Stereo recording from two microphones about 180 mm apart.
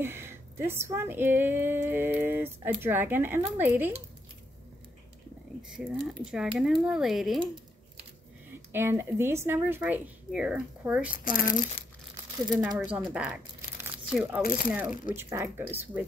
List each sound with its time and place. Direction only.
0.0 s speech: 15° right (ahead or behind)
5.6 s speech: 5° right (ahead or behind)
8.7 s speech: 15° right (ahead or behind)
11.1 s speech: 50° left (ahead or behind)
12.7 s speech: 10° right (ahead or behind)
13.1 s crumpling: 5° right (ahead or behind)
14.4 s speech: 55° left (ahead or behind)
14.7 s speech: 5° right (ahead or behind)